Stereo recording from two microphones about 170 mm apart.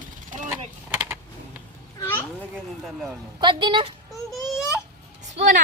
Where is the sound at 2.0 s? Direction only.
15° left (ahead or behind).